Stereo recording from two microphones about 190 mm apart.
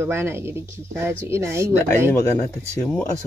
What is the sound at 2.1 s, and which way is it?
Speech, 15° left (ahead or behind).